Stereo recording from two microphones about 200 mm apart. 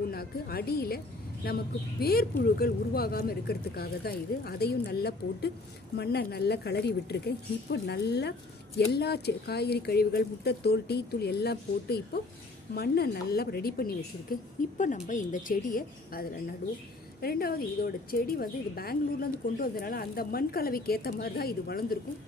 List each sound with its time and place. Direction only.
0.1 s a woman's voice: 50° left (ahead or behind)